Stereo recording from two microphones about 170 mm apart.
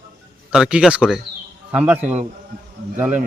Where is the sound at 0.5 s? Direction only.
5° right (ahead or behind).